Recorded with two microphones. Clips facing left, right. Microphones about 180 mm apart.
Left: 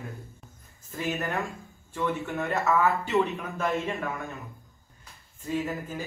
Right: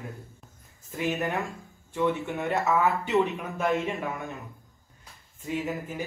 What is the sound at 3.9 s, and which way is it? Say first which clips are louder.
Speech: even; 20° right (ahead or behind).